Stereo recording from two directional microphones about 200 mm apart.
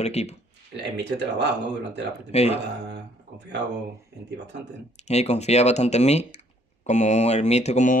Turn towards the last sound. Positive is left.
turn(degrees=35)  # may be behind; listen again after turning